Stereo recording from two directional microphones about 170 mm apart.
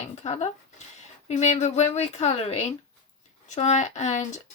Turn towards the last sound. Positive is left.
turn(degrees=45)  # may be behind; listen again after turning